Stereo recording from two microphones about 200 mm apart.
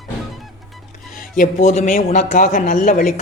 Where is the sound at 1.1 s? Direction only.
40° left (ahead or behind).